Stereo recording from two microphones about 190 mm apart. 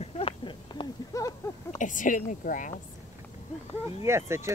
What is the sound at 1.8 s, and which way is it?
Speech, 45° left (ahead or behind).